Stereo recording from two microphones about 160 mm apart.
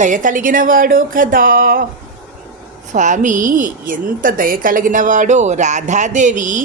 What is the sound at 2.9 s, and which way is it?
A woman's voice, 50° right (ahead or behind).